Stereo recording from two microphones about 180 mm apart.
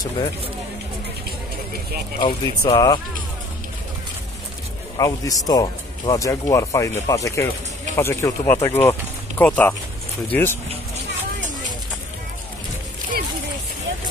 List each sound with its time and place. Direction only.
2.1 s speech: 25° left (ahead or behind)
4.9 s speech: 20° left (ahead or behind)